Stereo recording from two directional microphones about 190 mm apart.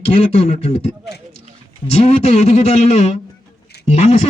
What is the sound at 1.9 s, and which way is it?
Speech, 35° left (ahead or behind).